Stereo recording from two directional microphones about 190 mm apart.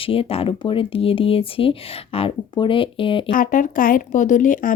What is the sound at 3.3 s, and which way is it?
Speech, 45° left (ahead or behind).